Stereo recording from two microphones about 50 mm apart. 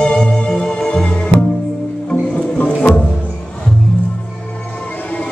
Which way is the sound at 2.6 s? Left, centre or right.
Left.